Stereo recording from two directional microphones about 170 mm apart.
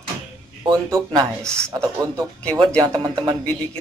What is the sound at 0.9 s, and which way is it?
Speech, 20° right (ahead or behind).